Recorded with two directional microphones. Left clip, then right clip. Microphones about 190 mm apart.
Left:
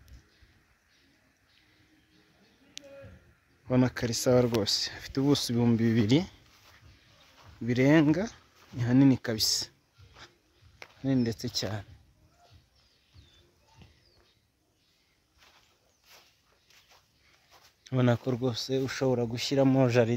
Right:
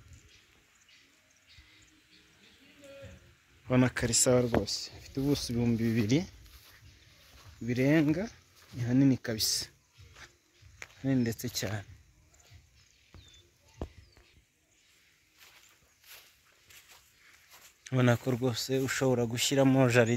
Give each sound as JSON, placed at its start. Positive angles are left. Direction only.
{"t": 3.6, "sound": "speech", "side_deg": 10}
{"t": 7.6, "sound": "speech", "side_deg": 20}
{"t": 11.0, "sound": "speech", "side_deg": 5}
{"t": 17.8, "sound": "speech", "side_deg": 5}